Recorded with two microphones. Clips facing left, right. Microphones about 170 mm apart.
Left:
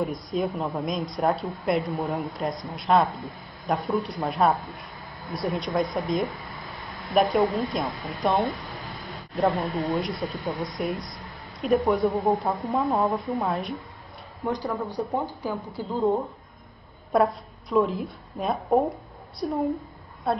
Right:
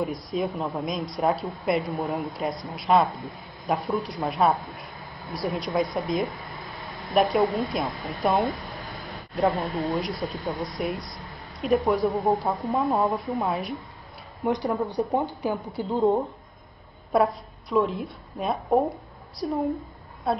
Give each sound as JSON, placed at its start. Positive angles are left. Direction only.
{"t": 0.3, "sound": "speech", "side_deg": 0}
{"t": 14.4, "sound": "speech", "side_deg": -20}
{"t": 17.1, "sound": "a woman's voice", "side_deg": 0}